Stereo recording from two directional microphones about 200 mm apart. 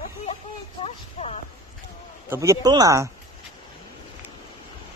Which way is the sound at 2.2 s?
15° right (ahead or behind).